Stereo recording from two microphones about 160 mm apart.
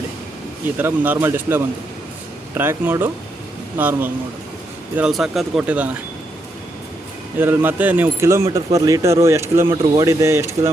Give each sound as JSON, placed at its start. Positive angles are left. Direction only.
{"t": 0.8, "sound": "speech", "side_deg": -10}
{"t": 7.3, "sound": "speech", "side_deg": -15}